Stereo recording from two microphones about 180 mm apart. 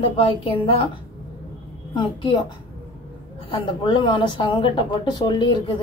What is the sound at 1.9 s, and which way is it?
Speech, 25° left (ahead or behind).